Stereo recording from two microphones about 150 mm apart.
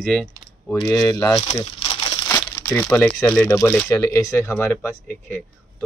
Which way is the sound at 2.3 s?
15° left (ahead or behind).